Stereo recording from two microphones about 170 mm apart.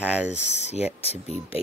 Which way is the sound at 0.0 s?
5° right (ahead or behind).